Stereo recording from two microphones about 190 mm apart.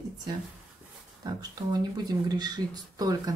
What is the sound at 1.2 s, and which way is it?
Speech, 20° right (ahead or behind).